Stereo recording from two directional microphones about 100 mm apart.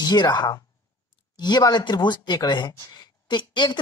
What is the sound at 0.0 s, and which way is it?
Speech, 45° left (ahead or behind).